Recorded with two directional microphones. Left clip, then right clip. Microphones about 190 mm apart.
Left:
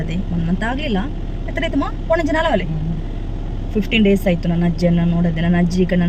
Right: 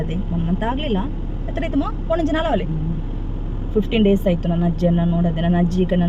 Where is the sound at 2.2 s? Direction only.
10° right (ahead or behind).